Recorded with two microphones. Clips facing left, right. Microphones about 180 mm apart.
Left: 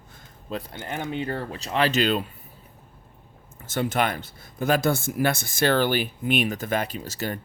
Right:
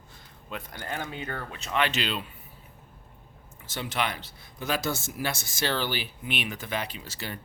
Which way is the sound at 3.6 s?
50° left (ahead or behind).